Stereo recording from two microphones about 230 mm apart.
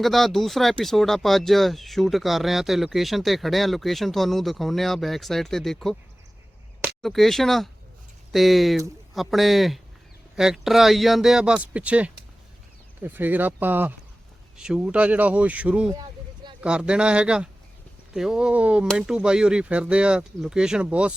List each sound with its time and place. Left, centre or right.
0.0 s speech: centre
15.9 s a sound: centre
16.6 s speech: centre